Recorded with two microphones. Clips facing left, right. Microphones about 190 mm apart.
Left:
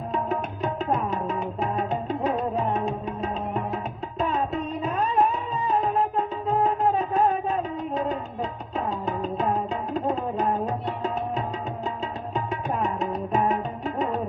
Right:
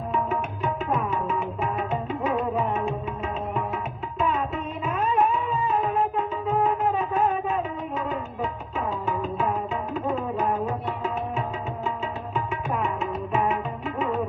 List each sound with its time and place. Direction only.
0.1 s music: 35° left (ahead or behind)